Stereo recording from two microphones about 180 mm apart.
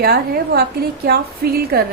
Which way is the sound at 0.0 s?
60° right (ahead or behind).